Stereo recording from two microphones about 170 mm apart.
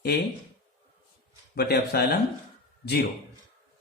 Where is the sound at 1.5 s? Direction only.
65° left (ahead or behind).